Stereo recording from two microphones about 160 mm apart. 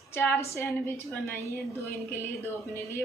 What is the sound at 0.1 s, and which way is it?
Speech, 15° left (ahead or behind).